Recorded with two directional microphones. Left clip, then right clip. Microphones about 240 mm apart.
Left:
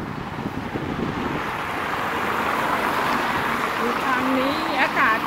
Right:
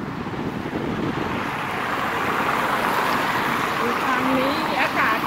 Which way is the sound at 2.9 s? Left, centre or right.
Right.